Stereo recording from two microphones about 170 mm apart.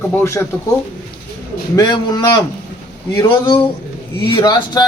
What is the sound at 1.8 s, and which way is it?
Speech, 25° left (ahead or behind).